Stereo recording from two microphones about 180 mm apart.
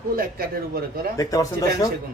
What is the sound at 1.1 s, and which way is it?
Speech, 20° left (ahead or behind).